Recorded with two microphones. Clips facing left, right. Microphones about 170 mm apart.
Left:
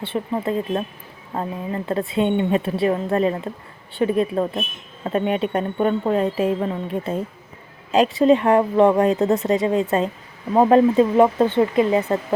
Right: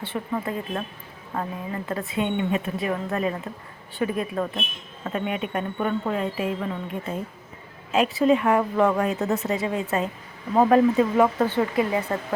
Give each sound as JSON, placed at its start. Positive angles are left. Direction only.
{"t": 0.0, "sound": "a woman's voice", "side_deg": 25}